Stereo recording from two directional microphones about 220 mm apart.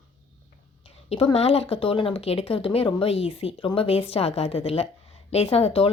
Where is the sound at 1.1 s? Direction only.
25° left (ahead or behind).